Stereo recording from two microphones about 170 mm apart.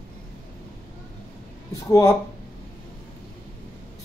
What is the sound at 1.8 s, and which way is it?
Speech, 20° left (ahead or behind).